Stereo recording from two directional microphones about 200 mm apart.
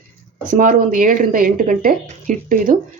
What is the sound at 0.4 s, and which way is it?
Speech, 45° right (ahead or behind).